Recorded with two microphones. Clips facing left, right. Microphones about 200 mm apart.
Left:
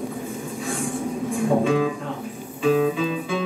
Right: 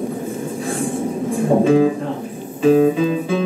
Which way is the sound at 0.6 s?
40° right (ahead or behind).